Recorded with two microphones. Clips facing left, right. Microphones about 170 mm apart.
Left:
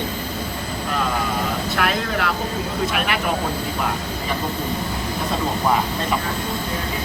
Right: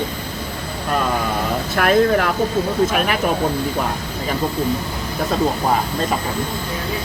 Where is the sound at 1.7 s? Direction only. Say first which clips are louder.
Right 10 dB; 45° right (ahead or behind).